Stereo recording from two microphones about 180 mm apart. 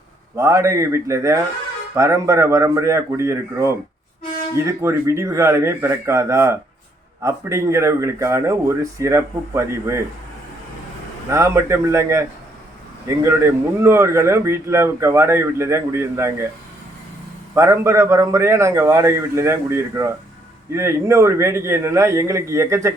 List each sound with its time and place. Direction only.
0.3 s speech: 15° right (ahead or behind)
11.3 s speech: 15° right (ahead or behind)
17.5 s speech: 15° right (ahead or behind)